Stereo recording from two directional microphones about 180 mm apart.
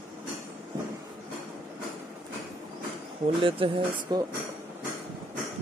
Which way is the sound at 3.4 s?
30° right (ahead or behind).